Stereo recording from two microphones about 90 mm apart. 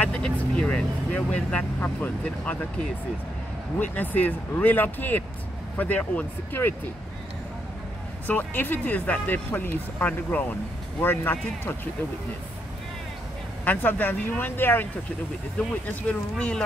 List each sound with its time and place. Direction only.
0.0 s speech: 10° left (ahead or behind)
3.8 s speech: 20° left (ahead or behind)
8.3 s speech: 20° left (ahead or behind)
13.7 s speech: 20° left (ahead or behind)
16.0 s speech: 15° left (ahead or behind)